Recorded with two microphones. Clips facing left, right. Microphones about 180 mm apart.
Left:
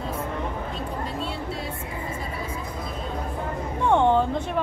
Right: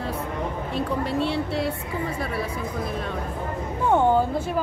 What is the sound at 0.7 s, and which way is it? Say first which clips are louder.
Speech: right 6 dB; 70° right (ahead or behind).